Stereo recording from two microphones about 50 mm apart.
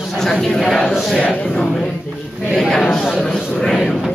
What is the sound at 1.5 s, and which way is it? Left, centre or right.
A man's voice, centre.